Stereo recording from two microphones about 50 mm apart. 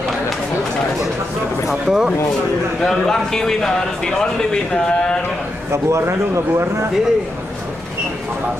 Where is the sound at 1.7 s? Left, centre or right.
Centre.